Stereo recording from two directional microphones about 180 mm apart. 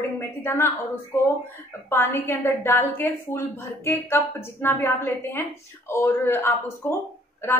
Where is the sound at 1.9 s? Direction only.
15° left (ahead or behind).